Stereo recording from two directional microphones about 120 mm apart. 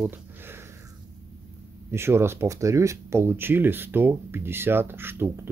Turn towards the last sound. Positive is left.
turn(degrees=-20)  # may be behind; listen again after turning